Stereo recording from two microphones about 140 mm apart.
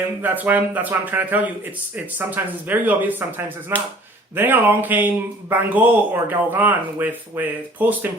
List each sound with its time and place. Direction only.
0.2 s speech: 10° right (ahead or behind)